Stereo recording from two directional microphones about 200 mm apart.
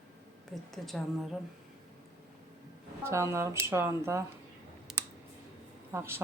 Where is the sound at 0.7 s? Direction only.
Centre (ahead or behind).